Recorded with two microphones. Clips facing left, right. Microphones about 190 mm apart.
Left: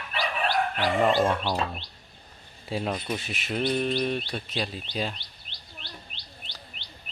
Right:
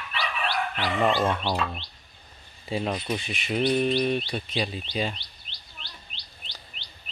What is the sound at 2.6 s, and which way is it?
Speech, centre (ahead or behind).